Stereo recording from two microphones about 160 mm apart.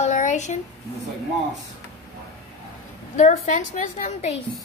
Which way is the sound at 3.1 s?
55° left (ahead or behind).